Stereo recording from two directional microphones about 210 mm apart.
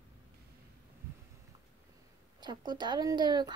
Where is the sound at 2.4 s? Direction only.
20° right (ahead or behind).